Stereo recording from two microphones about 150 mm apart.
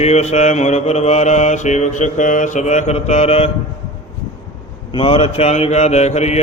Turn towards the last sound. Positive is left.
turn(degrees=45)  # may be behind; listen again after turning